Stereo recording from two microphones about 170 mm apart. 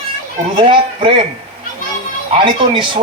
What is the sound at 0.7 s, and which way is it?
Speech, 30° right (ahead or behind).